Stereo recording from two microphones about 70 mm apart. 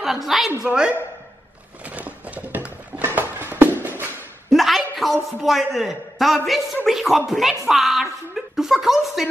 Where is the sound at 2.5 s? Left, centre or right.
Right.